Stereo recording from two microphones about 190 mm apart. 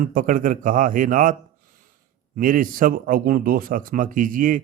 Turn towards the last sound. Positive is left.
turn(degrees=-45)  # may be behind; listen again after turning